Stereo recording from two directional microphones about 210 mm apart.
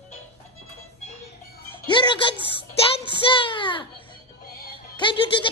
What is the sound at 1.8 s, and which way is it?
Music, 20° left (ahead or behind).